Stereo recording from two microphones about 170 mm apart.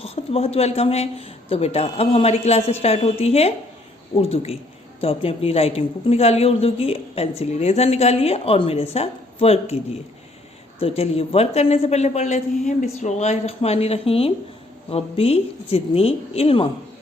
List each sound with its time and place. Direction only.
0.0 s a woman's voice: 35° left (ahead or behind)
10.8 s a woman's voice: 35° left (ahead or behind)